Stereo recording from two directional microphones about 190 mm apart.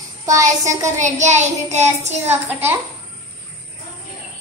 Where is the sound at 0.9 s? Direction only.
40° right (ahead or behind).